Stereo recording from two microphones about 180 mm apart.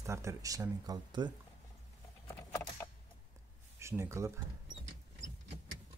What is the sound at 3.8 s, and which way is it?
Speech, 15° right (ahead or behind).